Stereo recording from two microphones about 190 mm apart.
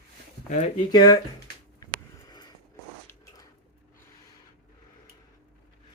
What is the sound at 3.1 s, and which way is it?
Biting, 20° left (ahead or behind).